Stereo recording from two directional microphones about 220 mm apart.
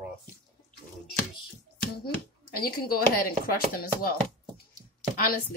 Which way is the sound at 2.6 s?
40° left (ahead or behind).